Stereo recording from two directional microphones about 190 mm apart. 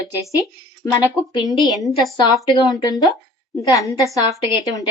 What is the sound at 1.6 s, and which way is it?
Speech, centre (ahead or behind).